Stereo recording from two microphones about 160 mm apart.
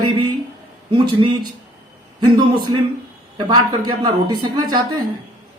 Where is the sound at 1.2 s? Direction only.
35° right (ahead or behind).